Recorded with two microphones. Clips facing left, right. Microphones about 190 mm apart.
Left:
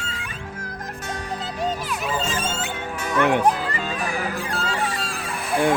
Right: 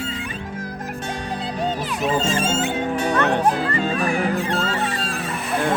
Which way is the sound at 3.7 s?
30° right (ahead or behind).